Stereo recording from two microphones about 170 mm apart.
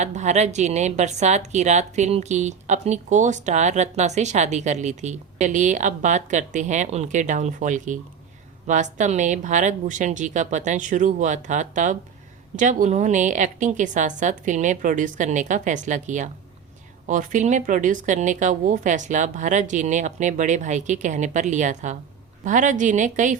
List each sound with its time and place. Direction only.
0.0 s a woman's voice: 45° right (ahead or behind)